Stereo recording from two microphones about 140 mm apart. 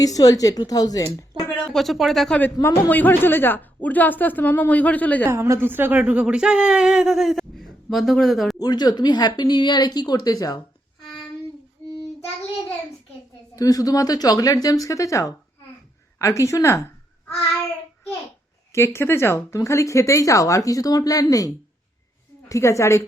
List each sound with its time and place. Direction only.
0.0 s speech: 25° left (ahead or behind)
1.5 s speech: centre (ahead or behind)
2.4 s a man's voice: 15° left (ahead or behind)
5.3 s speech: 20° right (ahead or behind); by 8.5 s centre (ahead or behind)
8.5 s speech: 30° left (ahead or behind)
11.0 s a sound: 5° left (ahead or behind)
13.6 s speech: 25° left (ahead or behind)
18.7 s speech: 20° left (ahead or behind)